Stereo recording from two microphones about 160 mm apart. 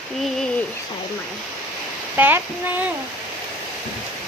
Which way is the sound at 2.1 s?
10° right (ahead or behind).